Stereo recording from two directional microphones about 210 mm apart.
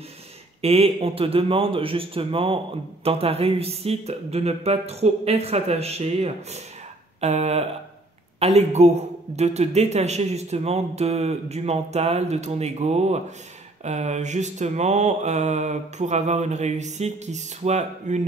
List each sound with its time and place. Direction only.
0.6 s a man's voice: 30° right (ahead or behind)